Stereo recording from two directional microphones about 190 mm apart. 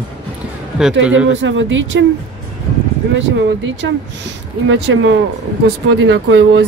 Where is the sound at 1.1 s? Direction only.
85° right.